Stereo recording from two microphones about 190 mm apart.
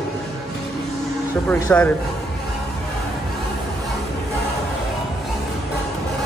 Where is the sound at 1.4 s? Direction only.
15° left (ahead or behind).